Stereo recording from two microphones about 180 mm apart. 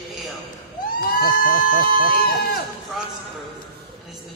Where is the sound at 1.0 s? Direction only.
55° left (ahead or behind).